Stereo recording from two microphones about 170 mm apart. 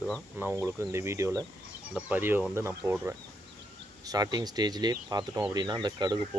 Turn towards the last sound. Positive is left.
turn(degrees=-25)  # may be behind; listen again after turning